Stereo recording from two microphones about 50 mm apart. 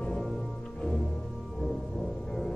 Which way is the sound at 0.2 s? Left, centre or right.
Centre.